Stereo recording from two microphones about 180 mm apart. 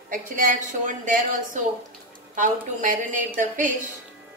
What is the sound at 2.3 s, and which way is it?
Speech, 45° right (ahead or behind).